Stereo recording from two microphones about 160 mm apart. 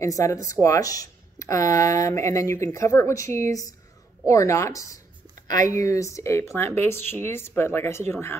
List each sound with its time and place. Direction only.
0.0 s speech: 20° left (ahead or behind)